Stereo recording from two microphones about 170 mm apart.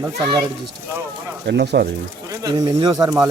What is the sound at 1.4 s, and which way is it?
Speech, 80° right.